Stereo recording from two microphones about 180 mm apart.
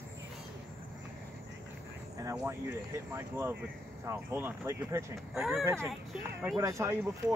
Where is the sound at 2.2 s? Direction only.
15° right (ahead or behind).